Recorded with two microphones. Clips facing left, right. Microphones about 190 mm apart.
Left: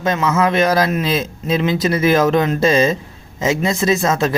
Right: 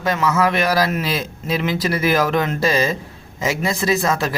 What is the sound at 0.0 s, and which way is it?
Speech, 20° left (ahead or behind).